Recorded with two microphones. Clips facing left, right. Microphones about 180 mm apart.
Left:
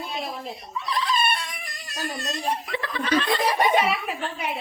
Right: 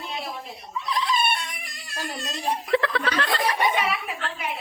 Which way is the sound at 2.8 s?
90° right.